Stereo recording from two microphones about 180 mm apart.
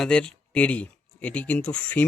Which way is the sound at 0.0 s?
5° left (ahead or behind).